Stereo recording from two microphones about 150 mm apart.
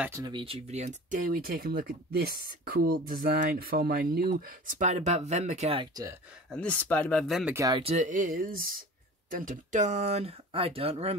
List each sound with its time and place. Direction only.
0.0 s speech: 20° right (ahead or behind)
0.3 s speech: 35° right (ahead or behind)
6.5 s speech: 10° left (ahead or behind)
7.7 s speech: 40° right (ahead or behind)
8.1 s speech: 65° right (ahead or behind); by 11.1 s 40° right (ahead or behind)